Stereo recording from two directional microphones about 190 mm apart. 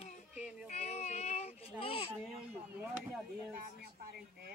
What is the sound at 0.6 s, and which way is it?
Speech, 35° left (ahead or behind).